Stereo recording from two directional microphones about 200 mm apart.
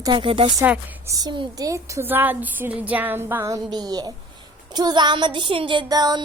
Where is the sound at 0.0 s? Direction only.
25° right (ahead or behind).